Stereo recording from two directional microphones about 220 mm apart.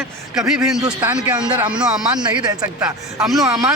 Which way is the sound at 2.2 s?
20° right (ahead or behind).